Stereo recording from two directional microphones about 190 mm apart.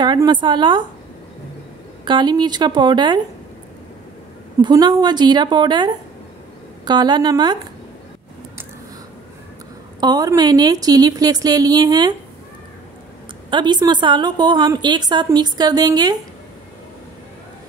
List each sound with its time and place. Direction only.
0.0 s a woman's voice: 25° right (ahead or behind)
2.0 s a woman's voice: 25° right (ahead or behind)
4.6 s a woman's voice: 20° right (ahead or behind)
9.9 s a woman's voice: 20° right (ahead or behind)
13.5 s a woman's voice: 25° right (ahead or behind)